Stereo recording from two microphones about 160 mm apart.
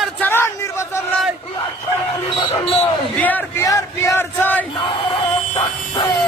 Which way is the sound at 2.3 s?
40° left (ahead or behind).